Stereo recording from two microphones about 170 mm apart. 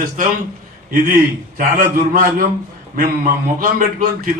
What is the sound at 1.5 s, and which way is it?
A man's voice, 55° right (ahead or behind).